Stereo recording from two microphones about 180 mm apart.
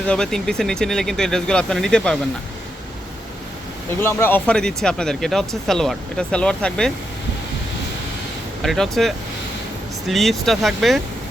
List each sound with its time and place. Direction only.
0.1 s speech: 5° left (ahead or behind)
4.0 s speech: 10° left (ahead or behind)
8.6 s speech: centre (ahead or behind)